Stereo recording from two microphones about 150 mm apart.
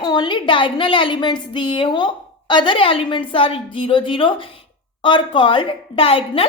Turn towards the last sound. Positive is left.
turn(degrees=40)  # may be behind; listen again after turning